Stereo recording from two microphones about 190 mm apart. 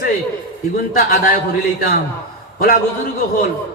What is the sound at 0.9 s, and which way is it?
Speech, 50° left (ahead or behind).